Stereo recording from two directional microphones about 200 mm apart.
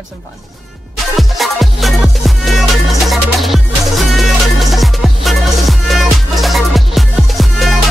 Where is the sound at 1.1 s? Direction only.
Centre (ahead or behind).